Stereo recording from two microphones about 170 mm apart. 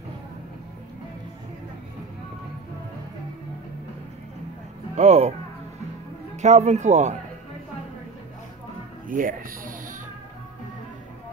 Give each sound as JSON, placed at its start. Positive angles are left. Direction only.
{"t": 4.9, "sound": "speech", "side_deg": -40}
{"t": 6.3, "sound": "speech", "side_deg": -45}
{"t": 9.0, "sound": "speech", "side_deg": -55}